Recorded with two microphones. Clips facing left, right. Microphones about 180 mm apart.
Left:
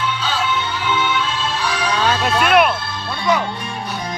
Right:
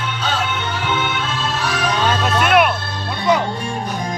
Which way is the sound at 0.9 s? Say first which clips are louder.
Left 3 dB; 45° right (ahead or behind).